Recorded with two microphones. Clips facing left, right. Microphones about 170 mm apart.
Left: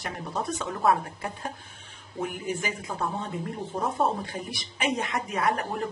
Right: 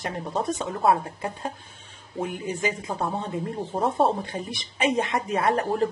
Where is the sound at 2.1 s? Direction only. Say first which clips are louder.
Right 2 dB; 25° right (ahead or behind).